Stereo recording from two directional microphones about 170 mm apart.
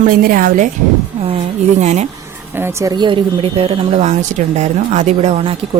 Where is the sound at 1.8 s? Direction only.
40° right (ahead or behind).